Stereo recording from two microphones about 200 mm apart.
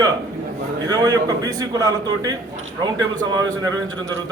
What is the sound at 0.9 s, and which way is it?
A man's voice, 20° right (ahead or behind).